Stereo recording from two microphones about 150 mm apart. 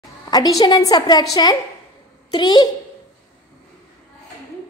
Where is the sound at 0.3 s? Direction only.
25° left (ahead or behind).